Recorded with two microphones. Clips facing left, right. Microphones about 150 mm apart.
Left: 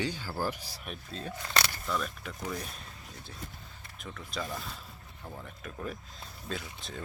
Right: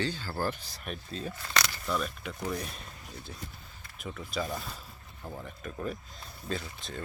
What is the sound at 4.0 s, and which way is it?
Speech, 5° right (ahead or behind).